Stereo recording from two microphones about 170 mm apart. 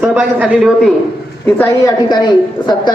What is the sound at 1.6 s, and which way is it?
A woman's voice, 20° left (ahead or behind).